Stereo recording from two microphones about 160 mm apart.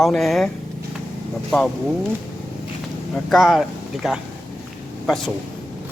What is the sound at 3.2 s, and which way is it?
Speech, centre (ahead or behind).